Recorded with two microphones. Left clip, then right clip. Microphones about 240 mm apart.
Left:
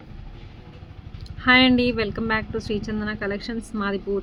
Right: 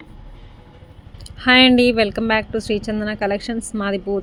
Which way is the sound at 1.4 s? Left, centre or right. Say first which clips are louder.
Right 4 dB; right.